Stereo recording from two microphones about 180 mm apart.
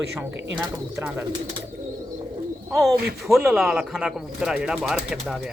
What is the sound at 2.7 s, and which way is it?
Speech, centre (ahead or behind).